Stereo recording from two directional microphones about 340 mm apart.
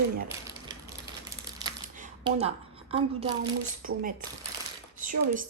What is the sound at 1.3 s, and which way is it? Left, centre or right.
Crumpling, centre.